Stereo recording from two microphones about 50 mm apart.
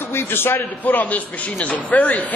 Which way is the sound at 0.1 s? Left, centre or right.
Left.